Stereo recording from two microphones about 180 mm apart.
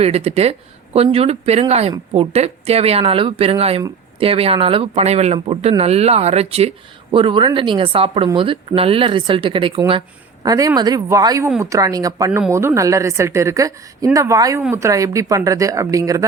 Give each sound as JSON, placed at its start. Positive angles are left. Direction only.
{"t": 0.0, "sound": "a woman's voice", "side_deg": -35}